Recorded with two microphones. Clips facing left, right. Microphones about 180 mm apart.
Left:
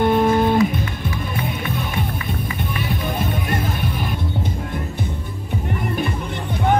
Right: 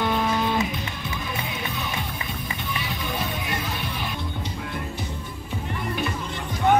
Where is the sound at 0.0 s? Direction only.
50° left (ahead or behind).